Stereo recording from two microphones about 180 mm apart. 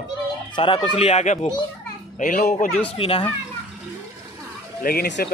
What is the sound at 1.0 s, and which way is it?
A man's voice, 40° left (ahead or behind).